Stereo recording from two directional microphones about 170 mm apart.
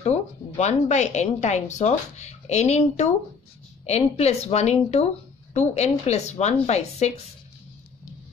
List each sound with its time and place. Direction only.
0.0 s speech: 40° left (ahead or behind)